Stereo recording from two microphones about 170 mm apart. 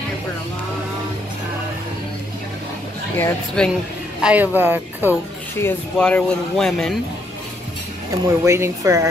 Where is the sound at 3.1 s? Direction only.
10° left (ahead or behind).